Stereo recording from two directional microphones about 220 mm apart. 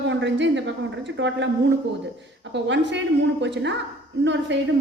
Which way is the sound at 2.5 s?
55° right (ahead or behind).